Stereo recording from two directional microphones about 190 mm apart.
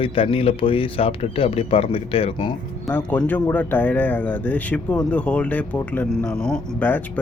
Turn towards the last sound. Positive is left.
turn(degrees=10)  # may be behind; listen again after turning